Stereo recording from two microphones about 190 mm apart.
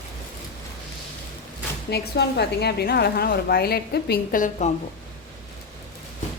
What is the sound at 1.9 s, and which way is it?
A woman's voice, 60° left (ahead or behind).